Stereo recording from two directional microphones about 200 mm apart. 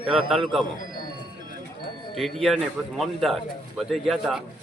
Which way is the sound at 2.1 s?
Centre (ahead or behind).